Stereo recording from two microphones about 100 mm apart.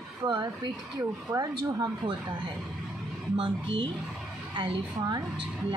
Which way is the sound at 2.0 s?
50° right (ahead or behind).